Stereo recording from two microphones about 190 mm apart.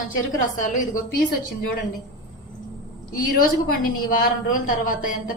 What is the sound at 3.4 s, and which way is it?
A woman's voice, 45° left (ahead or behind).